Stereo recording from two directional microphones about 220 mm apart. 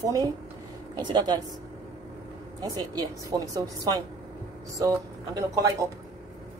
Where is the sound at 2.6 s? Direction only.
15° right (ahead or behind).